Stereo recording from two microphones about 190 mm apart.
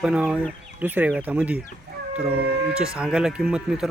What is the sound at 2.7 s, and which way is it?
Speech, 5° right (ahead or behind).